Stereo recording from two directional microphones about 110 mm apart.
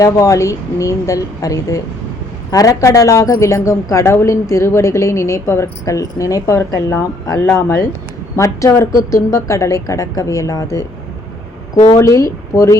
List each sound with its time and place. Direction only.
0.0 s a woman's voice: 30° left (ahead or behind)
11.9 s a woman's voice: 30° left (ahead or behind)